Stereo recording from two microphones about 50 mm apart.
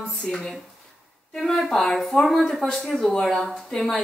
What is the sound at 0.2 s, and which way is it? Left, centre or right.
A woman's voice, centre.